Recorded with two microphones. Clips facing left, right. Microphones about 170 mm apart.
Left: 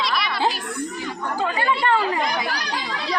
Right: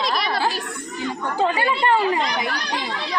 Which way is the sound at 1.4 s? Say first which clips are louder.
Right 2 dB; 25° right (ahead or behind).